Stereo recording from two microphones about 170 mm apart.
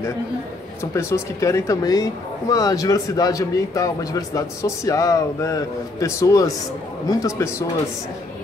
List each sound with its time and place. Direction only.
0.9 s a man's voice: 15° left (ahead or behind)